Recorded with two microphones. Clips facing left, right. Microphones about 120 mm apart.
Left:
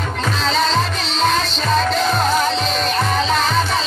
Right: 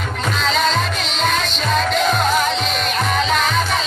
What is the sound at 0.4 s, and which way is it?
Music, 35° left (ahead or behind).